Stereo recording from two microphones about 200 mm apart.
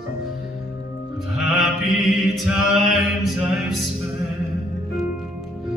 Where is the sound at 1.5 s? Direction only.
Centre (ahead or behind).